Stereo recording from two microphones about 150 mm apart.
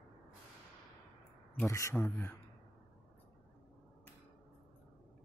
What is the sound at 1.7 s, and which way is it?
Speech, 20° left (ahead or behind).